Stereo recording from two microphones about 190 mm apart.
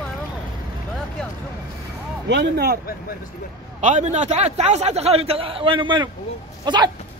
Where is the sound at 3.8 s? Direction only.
40° right (ahead or behind); by 6.9 s 20° right (ahead or behind).